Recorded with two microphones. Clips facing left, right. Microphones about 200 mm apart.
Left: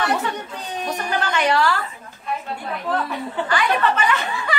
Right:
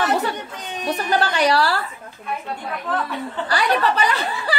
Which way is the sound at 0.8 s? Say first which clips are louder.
Right 4 dB; 35° right (ahead or behind).